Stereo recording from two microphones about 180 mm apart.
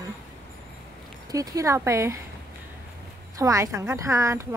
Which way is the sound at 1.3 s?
20° right (ahead or behind).